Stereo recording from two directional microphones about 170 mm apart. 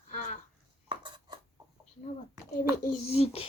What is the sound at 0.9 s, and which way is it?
Cutlery, 25° right (ahead or behind).